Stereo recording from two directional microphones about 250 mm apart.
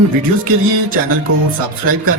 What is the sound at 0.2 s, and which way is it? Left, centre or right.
Music, right.